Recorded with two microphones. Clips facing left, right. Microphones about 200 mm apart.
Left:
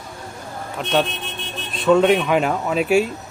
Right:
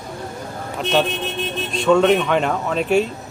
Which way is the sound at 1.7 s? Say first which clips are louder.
Even; 5° left (ahead or behind).